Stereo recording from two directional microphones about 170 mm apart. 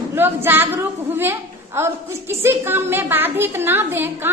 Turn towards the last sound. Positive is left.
turn(degrees=-10)  # may be behind; listen again after turning